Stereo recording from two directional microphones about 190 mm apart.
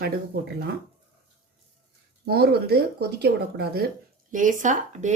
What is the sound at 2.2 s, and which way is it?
Speech, 55° right (ahead or behind).